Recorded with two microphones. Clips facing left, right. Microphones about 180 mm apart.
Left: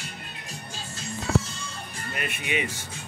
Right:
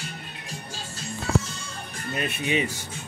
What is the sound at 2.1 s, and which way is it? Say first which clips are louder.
Speech: right 4 dB; 30° right (ahead or behind).